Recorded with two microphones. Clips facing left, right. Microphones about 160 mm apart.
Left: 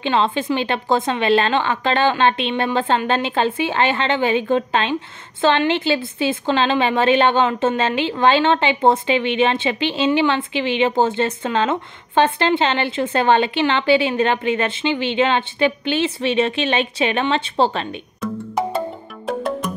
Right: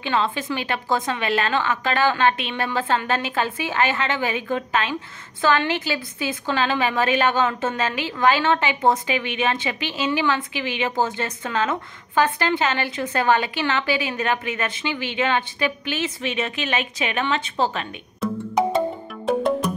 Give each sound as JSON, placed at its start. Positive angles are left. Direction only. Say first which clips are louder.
{"t": 0.0, "sound": "a woman's voice", "louder": "left 4 dB", "side_deg": 25}
{"t": 18.6, "sound": "music", "louder": "right 2 dB", "side_deg": 5}